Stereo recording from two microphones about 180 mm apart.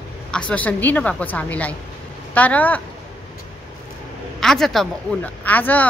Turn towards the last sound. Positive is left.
turn(degrees=10)  # may be behind; listen again after turning